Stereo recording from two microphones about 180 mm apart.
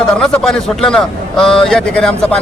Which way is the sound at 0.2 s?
5° left (ahead or behind).